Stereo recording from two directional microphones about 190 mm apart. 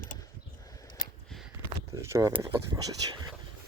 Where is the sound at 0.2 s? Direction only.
20° left (ahead or behind).